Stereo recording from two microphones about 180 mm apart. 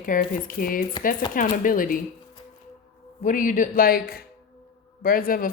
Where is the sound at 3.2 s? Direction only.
45° left (ahead or behind).